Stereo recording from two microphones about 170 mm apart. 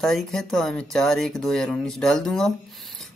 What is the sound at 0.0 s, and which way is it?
Speech, centre (ahead or behind).